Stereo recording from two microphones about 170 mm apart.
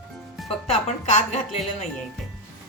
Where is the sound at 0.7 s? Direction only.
40° left (ahead or behind).